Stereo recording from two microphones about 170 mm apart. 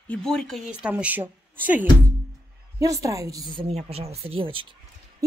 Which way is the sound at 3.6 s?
35° right (ahead or behind).